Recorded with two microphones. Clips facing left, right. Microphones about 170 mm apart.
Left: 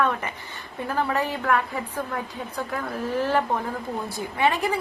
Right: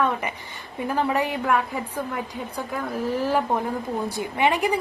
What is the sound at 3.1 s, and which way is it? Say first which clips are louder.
A woman's voice: left 1 dB; 10° right (ahead or behind).